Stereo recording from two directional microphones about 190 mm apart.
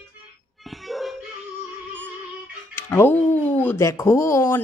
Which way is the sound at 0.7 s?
Centre (ahead or behind).